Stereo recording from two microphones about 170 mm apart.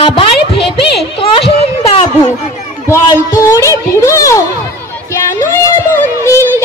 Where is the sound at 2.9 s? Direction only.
15° left (ahead or behind).